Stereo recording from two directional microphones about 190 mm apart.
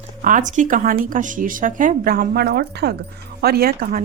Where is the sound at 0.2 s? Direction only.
40° right (ahead or behind).